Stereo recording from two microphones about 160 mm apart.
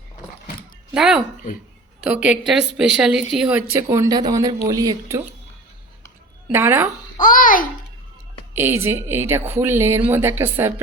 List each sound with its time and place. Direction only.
0.9 s a woman's voice: 5° right (ahead or behind)
3.7 s speech: 20° right (ahead or behind)
6.5 s speech: 15° right (ahead or behind)
7.2 s a child's voice: 55° left (ahead or behind)
8.5 s speech: 15° right (ahead or behind)